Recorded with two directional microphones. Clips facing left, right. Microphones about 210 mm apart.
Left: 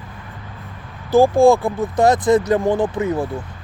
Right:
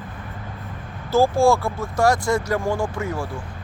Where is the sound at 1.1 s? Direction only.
15° left (ahead or behind).